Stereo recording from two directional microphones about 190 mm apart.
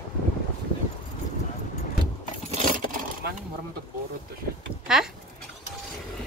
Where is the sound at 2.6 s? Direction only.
45° right (ahead or behind).